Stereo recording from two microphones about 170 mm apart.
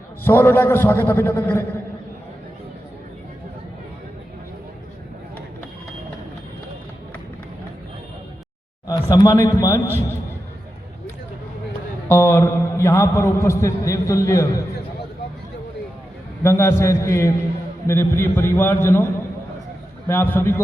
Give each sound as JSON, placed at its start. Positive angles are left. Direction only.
{"t": 0.3, "sound": "a man's voice", "side_deg": 10}
{"t": 8.9, "sound": "a man's voice", "side_deg": 20}
{"t": 12.0, "sound": "a man's voice", "side_deg": 15}
{"t": 16.4, "sound": "a man's voice", "side_deg": 15}
{"t": 20.1, "sound": "a man's voice", "side_deg": 10}